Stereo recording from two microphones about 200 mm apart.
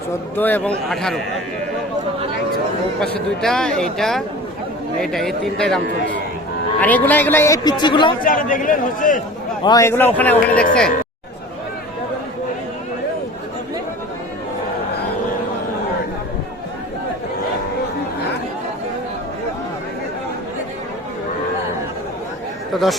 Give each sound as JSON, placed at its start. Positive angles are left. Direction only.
{"t": 0.3, "sound": "speech", "side_deg": 10}
{"t": 3.4, "sound": "speech", "side_deg": 5}
{"t": 6.8, "sound": "speech", "side_deg": 10}
{"t": 8.2, "sound": "a man's voice", "side_deg": 45}
{"t": 9.6, "sound": "speech", "side_deg": 15}
{"t": 22.7, "sound": "speech", "side_deg": 0}